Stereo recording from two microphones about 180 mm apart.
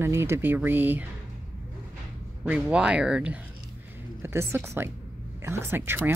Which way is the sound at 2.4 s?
5° right (ahead or behind).